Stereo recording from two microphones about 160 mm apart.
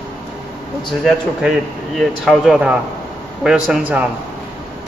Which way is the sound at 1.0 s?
Centre (ahead or behind).